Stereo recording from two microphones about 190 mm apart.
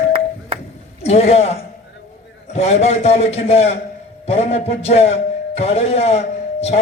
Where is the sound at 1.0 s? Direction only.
35° left (ahead or behind).